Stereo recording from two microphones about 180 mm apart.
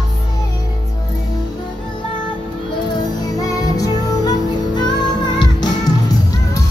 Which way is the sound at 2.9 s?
20° left (ahead or behind).